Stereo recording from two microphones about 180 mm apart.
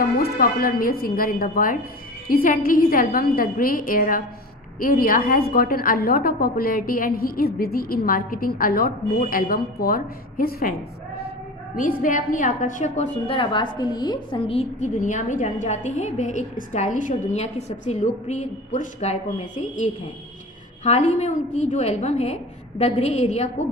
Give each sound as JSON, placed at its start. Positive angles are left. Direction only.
{"t": 0.2, "sound": "a woman's voice", "side_deg": 55}
{"t": 11.7, "sound": "a woman's voice", "side_deg": 45}
{"t": 13.4, "sound": "a woman's voice", "side_deg": 25}